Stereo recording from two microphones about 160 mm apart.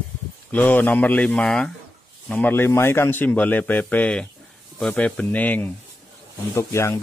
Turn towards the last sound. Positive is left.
turn(degrees=15)  # may be behind; listen again after turning